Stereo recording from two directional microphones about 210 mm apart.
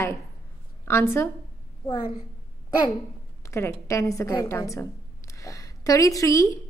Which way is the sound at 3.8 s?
15° left (ahead or behind).